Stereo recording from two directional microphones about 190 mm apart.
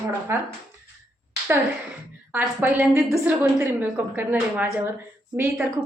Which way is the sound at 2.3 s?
10° right (ahead or behind).